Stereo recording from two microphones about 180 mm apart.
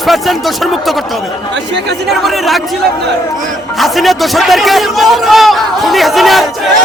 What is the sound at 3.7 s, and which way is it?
A man's voice, centre (ahead or behind).